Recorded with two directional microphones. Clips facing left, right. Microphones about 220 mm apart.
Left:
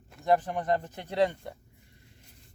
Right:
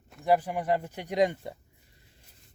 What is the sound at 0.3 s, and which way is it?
Speech, 10° right (ahead or behind).